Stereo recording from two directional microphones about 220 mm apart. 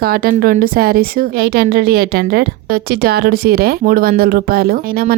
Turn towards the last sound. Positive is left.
turn(degrees=-40)  # may be behind; listen again after turning